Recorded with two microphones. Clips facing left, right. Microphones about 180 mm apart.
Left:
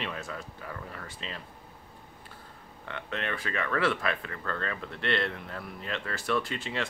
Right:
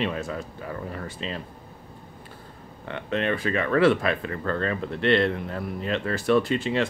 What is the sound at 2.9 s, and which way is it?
Speech, 25° right (ahead or behind).